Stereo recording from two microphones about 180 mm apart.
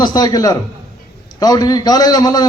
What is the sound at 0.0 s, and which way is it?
A man's voice, 25° left (ahead or behind).